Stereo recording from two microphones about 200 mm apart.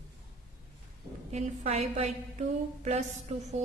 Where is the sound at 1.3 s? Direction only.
35° right (ahead or behind).